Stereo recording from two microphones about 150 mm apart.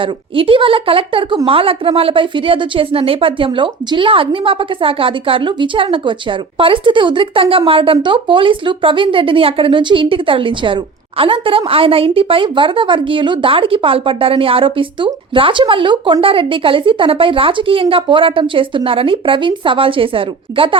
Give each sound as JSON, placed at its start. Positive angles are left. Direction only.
{"t": 0.0, "sound": "speech", "side_deg": -35}